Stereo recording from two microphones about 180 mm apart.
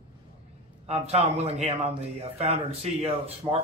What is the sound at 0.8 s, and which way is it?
Speech, 35° right (ahead or behind).